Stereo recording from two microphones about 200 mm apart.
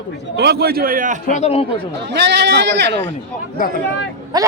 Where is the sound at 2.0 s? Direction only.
60° right (ahead or behind).